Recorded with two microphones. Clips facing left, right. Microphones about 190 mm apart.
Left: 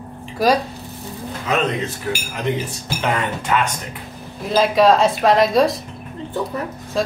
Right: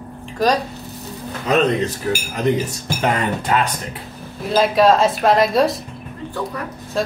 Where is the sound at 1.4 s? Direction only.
40° right (ahead or behind).